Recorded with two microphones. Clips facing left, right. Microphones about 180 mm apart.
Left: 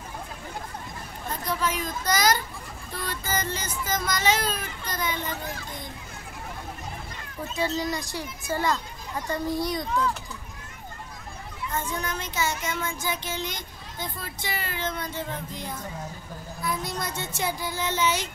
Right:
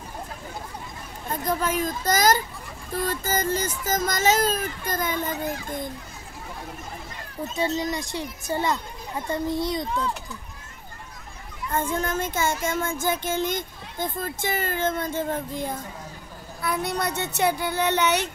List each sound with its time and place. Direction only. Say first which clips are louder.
1.4 s child singing: right 4 dB; 45° right (ahead or behind)
7.5 s speech: right 2 dB; 25° right (ahead or behind)
11.7 s child singing: right 6 dB; 50° right (ahead or behind)
16.6 s speech: right 5 dB; 65° right (ahead or behind)